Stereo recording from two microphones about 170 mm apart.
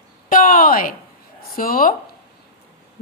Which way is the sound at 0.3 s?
55° left (ahead or behind).